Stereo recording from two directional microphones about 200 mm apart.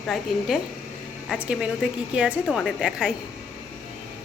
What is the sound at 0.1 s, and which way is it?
A woman's voice, centre (ahead or behind).